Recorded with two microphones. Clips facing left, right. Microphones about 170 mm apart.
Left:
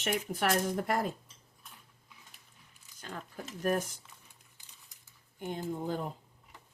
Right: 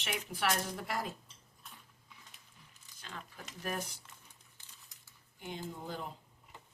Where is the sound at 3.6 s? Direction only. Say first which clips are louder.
Left 8 dB; 45° left (ahead or behind).